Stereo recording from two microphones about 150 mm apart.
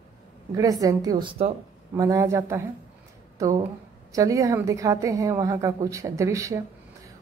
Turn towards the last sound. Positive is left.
turn(degrees=-20)  # may be behind; listen again after turning